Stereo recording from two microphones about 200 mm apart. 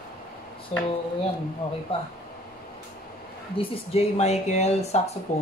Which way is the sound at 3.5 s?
30° left (ahead or behind).